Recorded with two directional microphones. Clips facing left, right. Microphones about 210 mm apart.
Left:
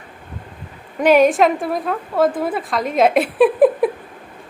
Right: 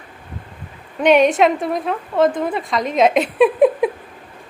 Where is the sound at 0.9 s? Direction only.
Centre (ahead or behind).